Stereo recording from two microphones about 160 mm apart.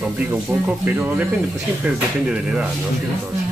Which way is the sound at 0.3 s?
15° right (ahead or behind).